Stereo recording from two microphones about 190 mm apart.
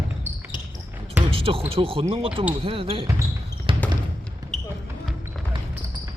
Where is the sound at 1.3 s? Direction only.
30° right (ahead or behind).